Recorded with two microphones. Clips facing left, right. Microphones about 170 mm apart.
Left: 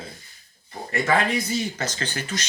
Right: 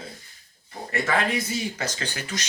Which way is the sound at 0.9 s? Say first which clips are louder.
Left 3 dB; centre (ahead or behind).